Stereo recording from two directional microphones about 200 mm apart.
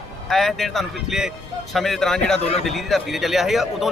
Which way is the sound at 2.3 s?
30° left (ahead or behind).